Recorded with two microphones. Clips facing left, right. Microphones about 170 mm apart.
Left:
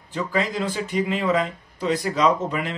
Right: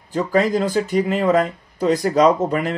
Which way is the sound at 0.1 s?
40° right (ahead or behind).